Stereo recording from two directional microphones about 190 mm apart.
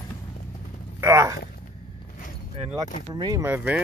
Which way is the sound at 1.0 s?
15° right (ahead or behind).